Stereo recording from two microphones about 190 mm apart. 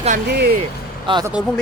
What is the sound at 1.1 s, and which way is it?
Speech, 25° right (ahead or behind).